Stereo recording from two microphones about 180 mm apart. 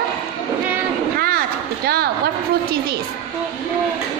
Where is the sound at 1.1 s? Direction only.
55° right (ahead or behind).